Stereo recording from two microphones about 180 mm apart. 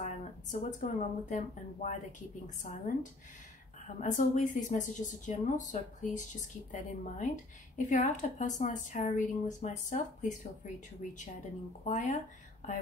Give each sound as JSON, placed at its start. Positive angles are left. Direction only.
{"t": 0.0, "sound": "speech", "side_deg": 45}